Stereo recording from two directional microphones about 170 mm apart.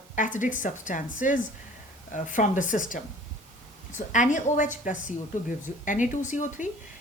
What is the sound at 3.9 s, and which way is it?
Speech, 45° left (ahead or behind).